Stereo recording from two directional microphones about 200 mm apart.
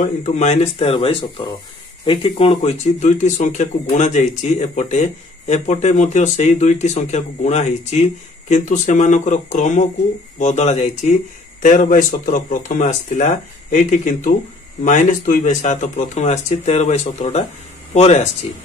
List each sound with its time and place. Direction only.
0.0 s speech: 35° left (ahead or behind)